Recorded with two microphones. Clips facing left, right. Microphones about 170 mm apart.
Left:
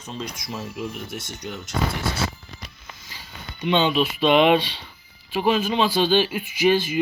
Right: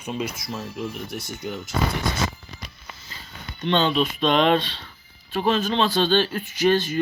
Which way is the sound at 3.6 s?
10° left (ahead or behind).